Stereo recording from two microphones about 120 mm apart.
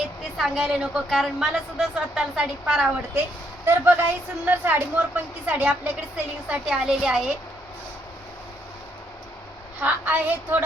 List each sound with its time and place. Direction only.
0.3 s a woman's voice: centre (ahead or behind)
9.8 s speech: 15° right (ahead or behind)